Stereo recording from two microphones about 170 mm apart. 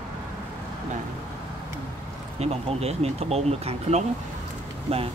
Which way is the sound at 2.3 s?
40° right (ahead or behind).